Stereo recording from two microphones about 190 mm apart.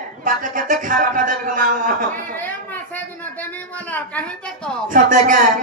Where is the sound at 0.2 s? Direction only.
45° right (ahead or behind).